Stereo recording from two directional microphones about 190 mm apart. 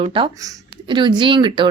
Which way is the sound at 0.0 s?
25° right (ahead or behind).